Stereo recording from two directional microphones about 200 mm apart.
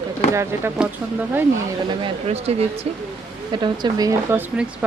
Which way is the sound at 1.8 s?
25° right (ahead or behind).